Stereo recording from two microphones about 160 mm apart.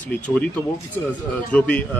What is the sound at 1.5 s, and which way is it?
Speech, 10° left (ahead or behind).